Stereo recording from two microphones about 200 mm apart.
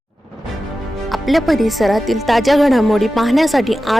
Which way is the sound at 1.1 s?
Centre (ahead or behind).